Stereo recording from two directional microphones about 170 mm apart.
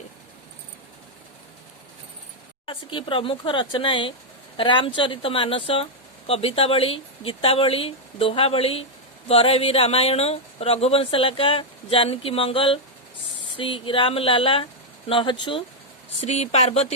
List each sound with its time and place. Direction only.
2.6 s speech: 30° left (ahead or behind)
16.2 s speech: 40° left (ahead or behind)